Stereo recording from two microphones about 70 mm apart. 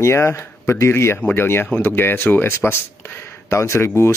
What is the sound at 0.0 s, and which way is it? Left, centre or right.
Speech, left.